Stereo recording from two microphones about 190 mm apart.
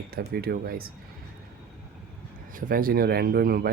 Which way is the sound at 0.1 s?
55° right (ahead or behind).